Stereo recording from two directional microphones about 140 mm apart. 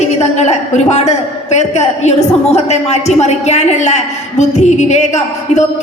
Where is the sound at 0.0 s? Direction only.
50° left (ahead or behind).